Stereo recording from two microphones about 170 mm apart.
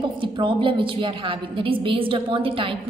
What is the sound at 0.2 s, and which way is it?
A woman's voice, 30° right (ahead or behind).